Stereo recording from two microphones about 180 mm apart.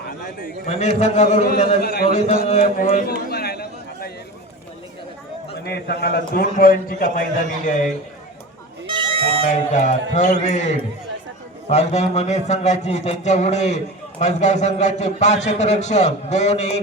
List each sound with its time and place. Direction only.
0.7 s a man's voice: 40° left (ahead or behind)
1.8 s a man's voice: 60° left (ahead or behind)
2.1 s a sound: 40° left (ahead or behind); by 4.1 s 60° left (ahead or behind)
5.6 s a man's voice: 65° left (ahead or behind); by 7.9 s 50° left (ahead or behind)
8.9 s music: 30° right (ahead or behind)
9.7 s a man's voice: 40° left (ahead or behind)